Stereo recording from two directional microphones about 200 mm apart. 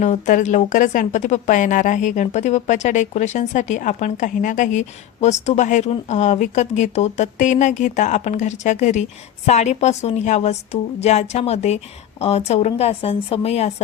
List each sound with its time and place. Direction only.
0.0 s speech: 40° left (ahead or behind)